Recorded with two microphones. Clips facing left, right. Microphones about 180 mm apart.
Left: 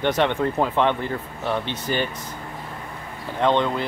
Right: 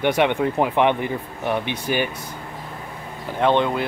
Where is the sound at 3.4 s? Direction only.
15° right (ahead or behind).